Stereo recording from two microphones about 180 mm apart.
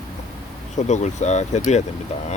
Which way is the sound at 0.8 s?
40° left (ahead or behind).